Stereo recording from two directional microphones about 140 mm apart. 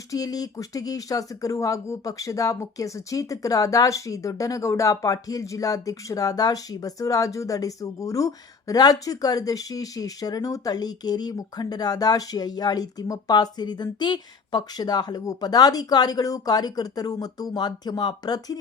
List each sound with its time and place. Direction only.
0.1 s speech: 25° left (ahead or behind)